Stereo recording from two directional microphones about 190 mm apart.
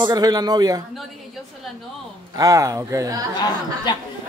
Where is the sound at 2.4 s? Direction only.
15° right (ahead or behind).